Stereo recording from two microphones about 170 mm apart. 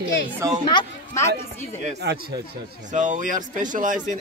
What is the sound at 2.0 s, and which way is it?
Speech, 75° right (ahead or behind).